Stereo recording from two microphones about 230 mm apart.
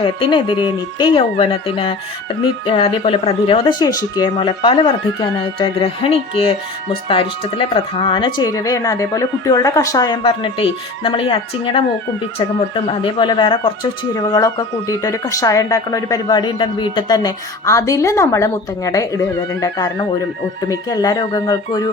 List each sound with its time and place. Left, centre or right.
0.0 s speech: left